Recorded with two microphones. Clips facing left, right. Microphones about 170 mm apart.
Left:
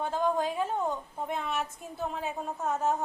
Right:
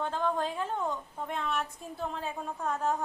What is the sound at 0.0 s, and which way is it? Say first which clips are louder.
A woman's voice: left 2 dB; 10° left (ahead or behind).